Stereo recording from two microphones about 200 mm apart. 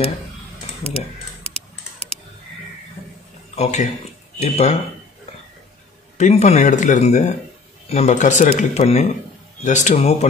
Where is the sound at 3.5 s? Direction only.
35° left (ahead or behind).